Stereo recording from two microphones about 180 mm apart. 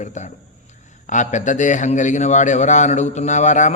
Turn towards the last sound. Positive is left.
turn(degrees=40)  # may be behind; listen again after turning